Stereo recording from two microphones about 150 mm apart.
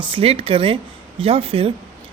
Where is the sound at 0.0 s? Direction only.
40° right (ahead or behind).